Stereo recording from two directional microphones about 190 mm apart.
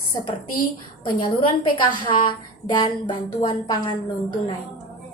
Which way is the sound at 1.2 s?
25° left (ahead or behind).